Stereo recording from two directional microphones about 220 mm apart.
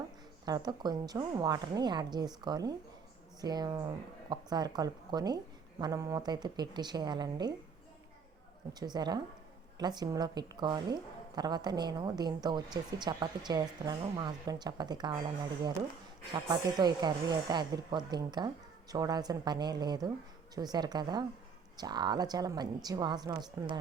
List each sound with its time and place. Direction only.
0.4 s a woman's voice: 15° right (ahead or behind)
8.8 s a woman's voice: 20° right (ahead or behind)
16.3 s a woman's voice: 20° right (ahead or behind)